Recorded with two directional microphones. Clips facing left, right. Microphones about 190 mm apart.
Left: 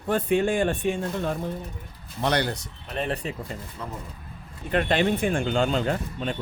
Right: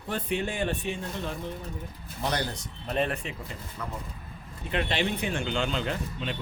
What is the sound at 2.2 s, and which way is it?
Speech, 70° left (ahead or behind).